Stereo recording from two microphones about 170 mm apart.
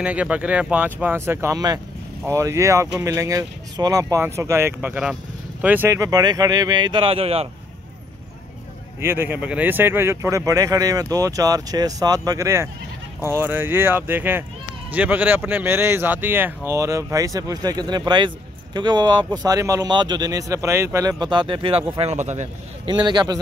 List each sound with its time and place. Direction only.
0.0 s speech: 10° right (ahead or behind); by 7.4 s 35° right (ahead or behind)
9.0 s speech: 15° right (ahead or behind); by 21.8 s 30° right (ahead or behind)
21.9 s speech: 40° right (ahead or behind)
22.8 s speech: 25° right (ahead or behind)